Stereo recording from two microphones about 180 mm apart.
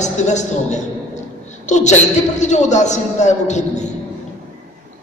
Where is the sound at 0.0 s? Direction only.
40° left (ahead or behind).